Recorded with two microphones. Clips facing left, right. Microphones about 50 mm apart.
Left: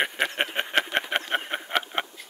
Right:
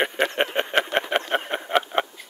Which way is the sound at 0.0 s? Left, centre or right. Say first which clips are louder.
Right 3 dB; centre.